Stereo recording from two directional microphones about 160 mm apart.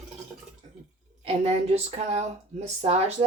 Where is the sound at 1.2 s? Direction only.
40° right (ahead or behind).